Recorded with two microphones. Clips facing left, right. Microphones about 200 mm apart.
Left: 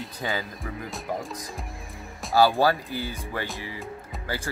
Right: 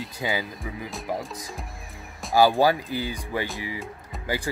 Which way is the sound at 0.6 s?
Centre (ahead or behind).